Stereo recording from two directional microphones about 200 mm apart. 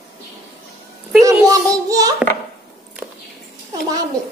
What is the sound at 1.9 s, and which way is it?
Speech, 15° right (ahead or behind).